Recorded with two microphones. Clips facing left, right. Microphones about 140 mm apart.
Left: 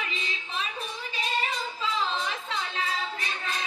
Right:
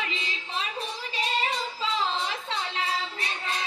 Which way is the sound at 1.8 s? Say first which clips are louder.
Even; 25° right (ahead or behind).